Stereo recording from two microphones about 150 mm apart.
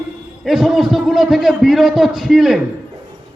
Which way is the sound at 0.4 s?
Centre (ahead or behind).